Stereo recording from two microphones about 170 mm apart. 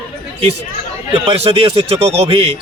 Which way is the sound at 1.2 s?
35° right (ahead or behind).